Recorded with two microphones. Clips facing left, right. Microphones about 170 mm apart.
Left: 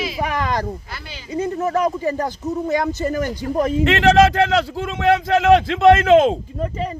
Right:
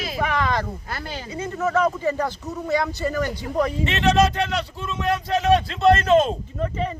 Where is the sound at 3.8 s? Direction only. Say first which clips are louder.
Left 7 dB; 90° left.